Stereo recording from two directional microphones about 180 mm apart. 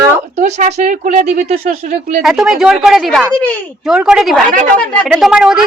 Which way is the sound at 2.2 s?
5° right (ahead or behind).